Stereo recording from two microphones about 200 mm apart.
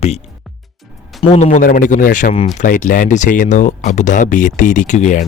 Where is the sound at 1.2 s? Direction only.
30° left (ahead or behind).